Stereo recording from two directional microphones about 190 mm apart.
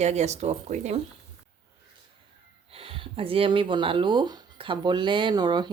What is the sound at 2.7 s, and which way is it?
Speech, 30° right (ahead or behind).